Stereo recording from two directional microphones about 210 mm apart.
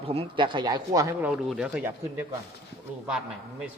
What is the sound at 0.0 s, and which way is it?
A man's voice, 25° right (ahead or behind).